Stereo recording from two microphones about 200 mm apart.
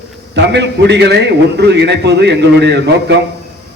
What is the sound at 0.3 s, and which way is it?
A man's voice, 60° right (ahead or behind).